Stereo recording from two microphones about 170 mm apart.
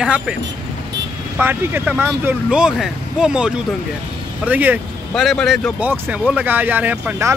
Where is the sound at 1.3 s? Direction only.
10° right (ahead or behind).